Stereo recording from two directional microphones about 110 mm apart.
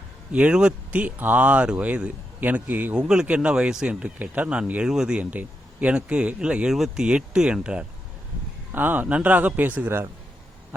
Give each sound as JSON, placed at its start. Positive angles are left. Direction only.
{"t": 0.3, "sound": "speech", "side_deg": -10}